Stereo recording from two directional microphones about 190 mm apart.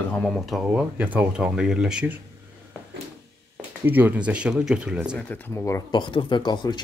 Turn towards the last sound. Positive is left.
turn(degrees=25)  # may be behind; listen again after turning